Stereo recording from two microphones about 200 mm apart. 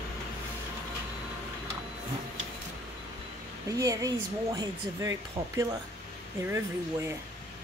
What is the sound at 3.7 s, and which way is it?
A woman's voice, 15° right (ahead or behind).